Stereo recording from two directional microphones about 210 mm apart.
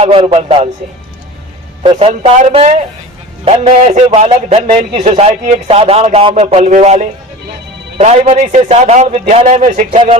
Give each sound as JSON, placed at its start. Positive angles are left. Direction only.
{"t": 0.0, "sound": "a man's voice", "side_deg": -25}
{"t": 1.8, "sound": "a man's voice", "side_deg": -25}